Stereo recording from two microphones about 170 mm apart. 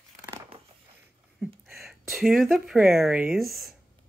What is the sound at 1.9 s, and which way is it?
Speech, centre (ahead or behind).